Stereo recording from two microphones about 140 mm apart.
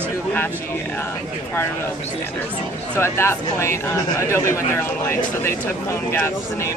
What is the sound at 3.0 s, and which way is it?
Speech, 20° left (ahead or behind).